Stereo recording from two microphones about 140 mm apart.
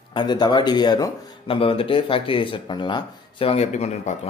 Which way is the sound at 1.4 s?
40° left (ahead or behind).